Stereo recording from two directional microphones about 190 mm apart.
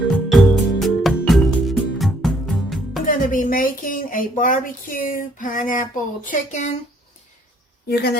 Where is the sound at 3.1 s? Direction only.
45° left (ahead or behind).